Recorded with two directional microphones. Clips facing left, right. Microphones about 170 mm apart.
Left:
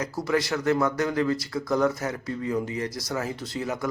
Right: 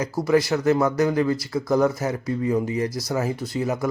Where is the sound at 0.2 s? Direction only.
20° right (ahead or behind).